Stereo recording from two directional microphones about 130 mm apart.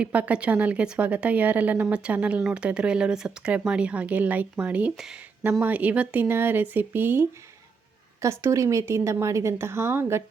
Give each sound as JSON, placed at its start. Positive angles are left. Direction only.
{"t": 0.0, "sound": "a woman's voice", "side_deg": -10}